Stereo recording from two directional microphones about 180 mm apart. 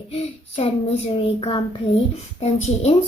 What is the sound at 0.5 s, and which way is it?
A child's voice, 35° left (ahead or behind).